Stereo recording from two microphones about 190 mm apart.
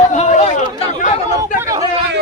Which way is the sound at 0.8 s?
40° left (ahead or behind).